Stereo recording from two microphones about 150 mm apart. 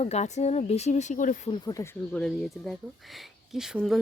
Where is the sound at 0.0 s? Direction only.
45° left (ahead or behind).